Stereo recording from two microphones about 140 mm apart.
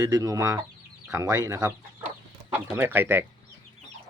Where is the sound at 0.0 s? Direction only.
25° right (ahead or behind).